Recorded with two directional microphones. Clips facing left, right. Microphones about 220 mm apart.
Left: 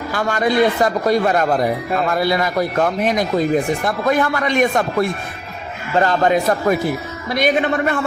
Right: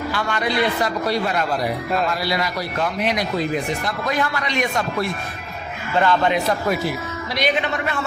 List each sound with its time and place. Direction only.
0.1 s a man's voice: 45° left (ahead or behind)
5.9 s a man's voice: 40° left (ahead or behind)